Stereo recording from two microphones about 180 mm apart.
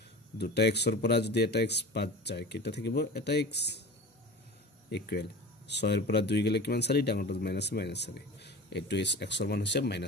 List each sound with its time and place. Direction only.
0.4 s speech: 70° left (ahead or behind)
4.8 s speech: 65° left (ahead or behind)